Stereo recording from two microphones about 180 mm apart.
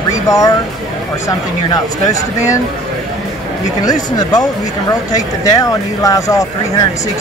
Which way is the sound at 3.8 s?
20° left (ahead or behind).